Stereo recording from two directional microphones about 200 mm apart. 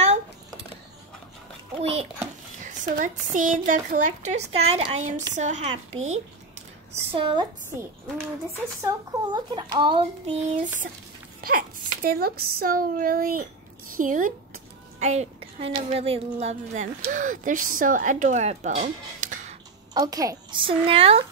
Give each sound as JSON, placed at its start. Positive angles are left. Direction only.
{"t": 1.8, "sound": "speech", "side_deg": -30}
{"t": 8.8, "sound": "speech", "side_deg": -20}
{"t": 11.4, "sound": "a child's voice", "side_deg": -45}
{"t": 19.9, "sound": "speech", "side_deg": -20}